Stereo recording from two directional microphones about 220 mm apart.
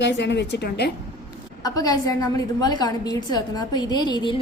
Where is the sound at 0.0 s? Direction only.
50° left (ahead or behind).